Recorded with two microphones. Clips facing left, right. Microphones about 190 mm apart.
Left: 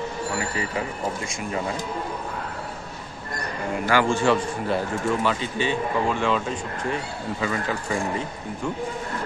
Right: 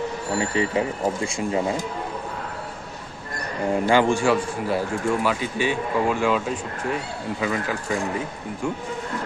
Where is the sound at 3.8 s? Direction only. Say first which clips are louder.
Right 2 dB; 20° right (ahead or behind).